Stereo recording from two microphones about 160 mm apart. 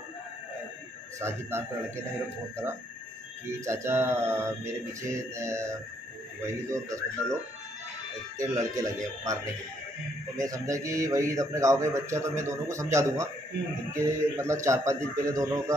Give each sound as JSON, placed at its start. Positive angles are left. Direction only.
{"t": 1.2, "sound": "a man's voice", "side_deg": -15}
{"t": 3.5, "sound": "a man's voice", "side_deg": -15}
{"t": 8.6, "sound": "a man's voice", "side_deg": -20}